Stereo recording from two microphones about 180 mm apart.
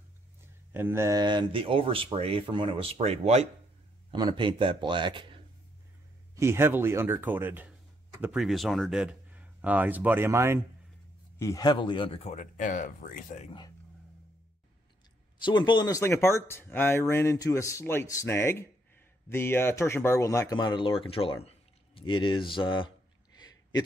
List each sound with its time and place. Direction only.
0.7 s speech: 15° right (ahead or behind); by 3.4 s 35° right (ahead or behind)
4.1 s speech: 25° right (ahead or behind)
6.3 s speech: 15° right (ahead or behind)
11.3 s speech: 20° left (ahead or behind); by 13.5 s 45° left (ahead or behind)
15.4 s speech: 25° left (ahead or behind)